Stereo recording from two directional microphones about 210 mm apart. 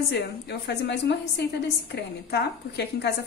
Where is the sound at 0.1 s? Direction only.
55° left (ahead or behind).